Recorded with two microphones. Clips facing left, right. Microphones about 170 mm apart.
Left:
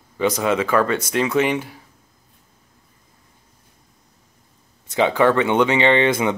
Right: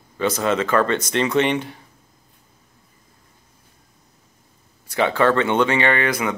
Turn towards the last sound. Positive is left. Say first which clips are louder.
# left 4 dB
turn(degrees=25)  # may be behind; listen again after turning